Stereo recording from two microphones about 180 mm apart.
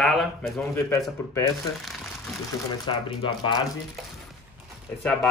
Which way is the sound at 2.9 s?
25° left (ahead or behind).